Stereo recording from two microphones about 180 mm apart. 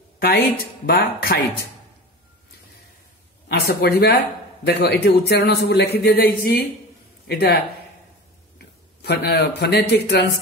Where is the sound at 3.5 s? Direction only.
65° left (ahead or behind).